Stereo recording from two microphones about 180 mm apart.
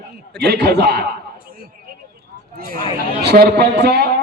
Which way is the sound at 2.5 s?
55° right (ahead or behind).